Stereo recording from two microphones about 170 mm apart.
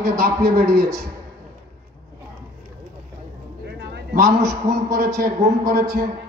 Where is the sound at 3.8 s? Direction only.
75° right (ahead or behind).